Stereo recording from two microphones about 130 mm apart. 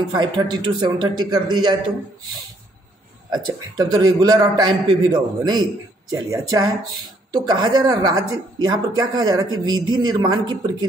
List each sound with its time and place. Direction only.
0.1 s a man's voice: 35° right (ahead or behind)
3.3 s a man's voice: 35° right (ahead or behind)